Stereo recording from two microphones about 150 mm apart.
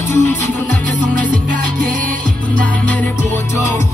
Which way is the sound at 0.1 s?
55° right (ahead or behind).